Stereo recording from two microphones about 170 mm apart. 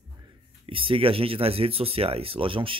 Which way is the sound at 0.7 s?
30° right (ahead or behind).